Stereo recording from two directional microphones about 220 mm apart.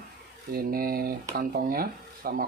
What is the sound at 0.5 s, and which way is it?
Speech, 40° right (ahead or behind).